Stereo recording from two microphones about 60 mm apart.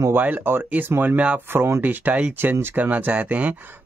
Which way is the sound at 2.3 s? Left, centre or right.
Right.